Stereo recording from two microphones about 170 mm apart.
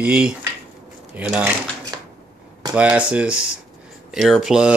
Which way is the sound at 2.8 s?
5° right (ahead or behind).